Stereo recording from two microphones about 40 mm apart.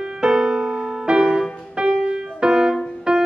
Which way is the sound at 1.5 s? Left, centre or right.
Centre.